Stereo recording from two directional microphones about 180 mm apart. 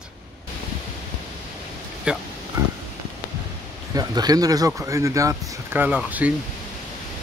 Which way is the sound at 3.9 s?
20° right (ahead or behind).